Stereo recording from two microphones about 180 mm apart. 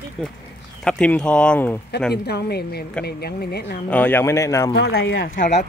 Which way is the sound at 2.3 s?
65° left (ahead or behind).